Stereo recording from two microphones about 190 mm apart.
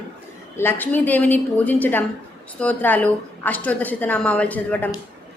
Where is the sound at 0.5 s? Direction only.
10° left (ahead or behind).